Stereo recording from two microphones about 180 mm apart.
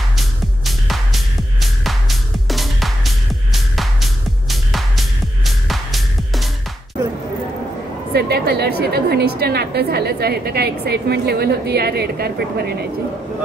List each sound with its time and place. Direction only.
0.7 s music: centre (ahead or behind)
8.1 s a woman's voice: 60° right (ahead or behind)